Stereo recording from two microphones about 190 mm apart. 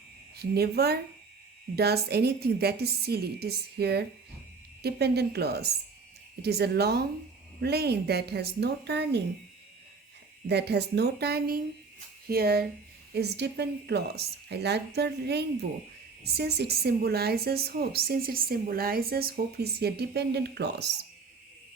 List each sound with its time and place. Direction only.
0.3 s a woman's voice: 55° right (ahead or behind)
10.4 s a woman's voice: 60° right (ahead or behind)